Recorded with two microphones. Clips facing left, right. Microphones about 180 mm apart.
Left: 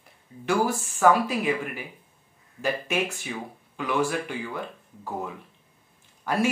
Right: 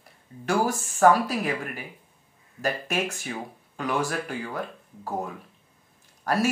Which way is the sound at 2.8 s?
45° right (ahead or behind).